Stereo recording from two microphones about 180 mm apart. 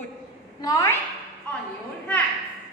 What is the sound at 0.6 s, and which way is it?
Speech, 20° left (ahead or behind).